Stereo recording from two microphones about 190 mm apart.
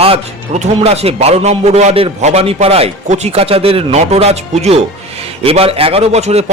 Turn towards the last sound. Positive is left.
turn(degrees=-35)  # may be behind; listen again after turning